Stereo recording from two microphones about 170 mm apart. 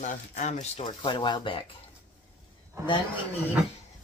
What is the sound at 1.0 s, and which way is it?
Speech, 25° left (ahead or behind).